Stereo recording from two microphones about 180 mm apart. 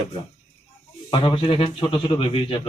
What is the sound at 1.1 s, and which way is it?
Speech, 30° left (ahead or behind).